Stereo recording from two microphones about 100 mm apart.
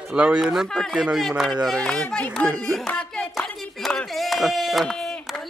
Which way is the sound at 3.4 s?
5° left (ahead or behind).